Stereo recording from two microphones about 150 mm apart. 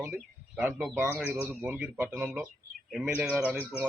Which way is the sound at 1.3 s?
10° right (ahead or behind).